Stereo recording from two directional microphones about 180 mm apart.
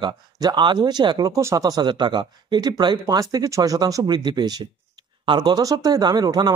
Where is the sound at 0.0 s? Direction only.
25° right (ahead or behind).